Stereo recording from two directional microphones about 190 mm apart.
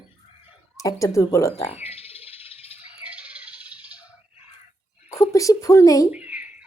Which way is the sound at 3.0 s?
5° right (ahead or behind).